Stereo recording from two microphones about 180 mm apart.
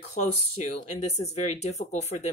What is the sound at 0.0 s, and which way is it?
Speech, 40° left (ahead or behind).